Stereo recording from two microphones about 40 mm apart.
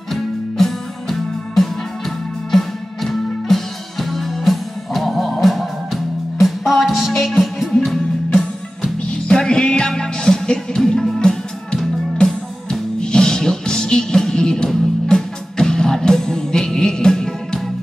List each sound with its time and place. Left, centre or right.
0.1 s music: centre
9.4 s music: left